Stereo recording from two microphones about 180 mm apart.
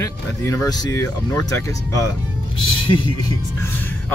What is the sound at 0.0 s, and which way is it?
Speech, 20° left (ahead or behind).